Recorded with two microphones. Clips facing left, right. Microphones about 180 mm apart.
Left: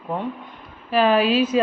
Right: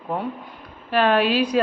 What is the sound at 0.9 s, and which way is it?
Speech, centre (ahead or behind).